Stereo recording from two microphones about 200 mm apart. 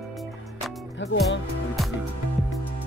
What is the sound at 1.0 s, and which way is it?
Music, 65° left (ahead or behind).